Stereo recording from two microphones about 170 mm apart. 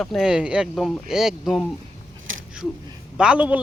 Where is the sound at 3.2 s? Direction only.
5° right (ahead or behind).